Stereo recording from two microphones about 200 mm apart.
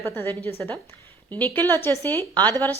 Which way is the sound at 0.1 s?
10° left (ahead or behind).